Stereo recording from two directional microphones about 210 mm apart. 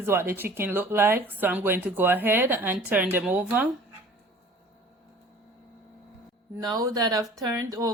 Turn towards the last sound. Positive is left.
turn(degrees=-15)  # may be behind; listen again after turning